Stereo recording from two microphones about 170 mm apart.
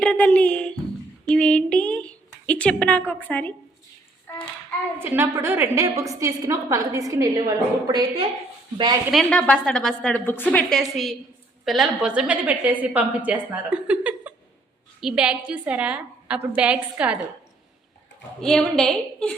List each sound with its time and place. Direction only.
0.0 s a sound: 5° left (ahead or behind)
3.1 s a woman's voice: 10° left (ahead or behind)
4.9 s a woman's voice: 10° right (ahead or behind)
9.1 s a woman's voice: 5° left (ahead or behind)
18.3 s a woman's voice: 5° left (ahead or behind)